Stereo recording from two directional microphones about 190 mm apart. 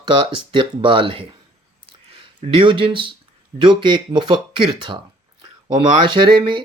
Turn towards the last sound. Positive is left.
turn(degrees=-25)  # may be behind; listen again after turning